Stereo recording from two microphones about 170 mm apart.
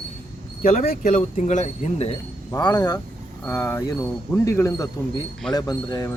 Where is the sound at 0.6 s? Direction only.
60° left (ahead or behind); by 2.2 s 40° left (ahead or behind).